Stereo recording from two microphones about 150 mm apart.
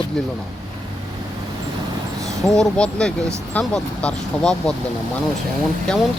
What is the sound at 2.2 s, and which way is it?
Speech, 5° left (ahead or behind).